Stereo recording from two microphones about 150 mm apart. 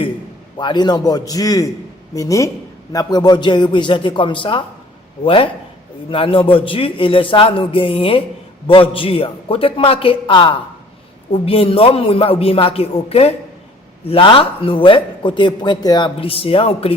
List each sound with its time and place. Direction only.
0.6 s a man's voice: 30° left (ahead or behind)